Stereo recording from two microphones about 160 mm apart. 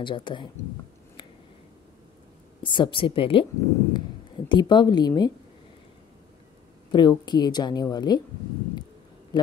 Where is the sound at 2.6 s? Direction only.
30° left (ahead or behind).